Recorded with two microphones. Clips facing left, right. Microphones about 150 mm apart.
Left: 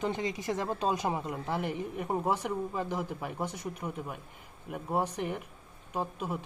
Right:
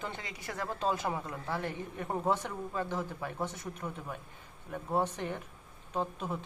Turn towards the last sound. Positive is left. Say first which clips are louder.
# left 1 dB
turn(degrees=10)  # may be behind; listen again after turning